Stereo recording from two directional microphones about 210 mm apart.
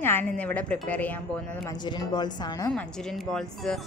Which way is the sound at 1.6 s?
20° left (ahead or behind).